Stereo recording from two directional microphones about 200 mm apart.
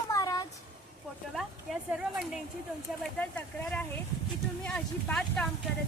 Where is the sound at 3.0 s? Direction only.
5° left (ahead or behind).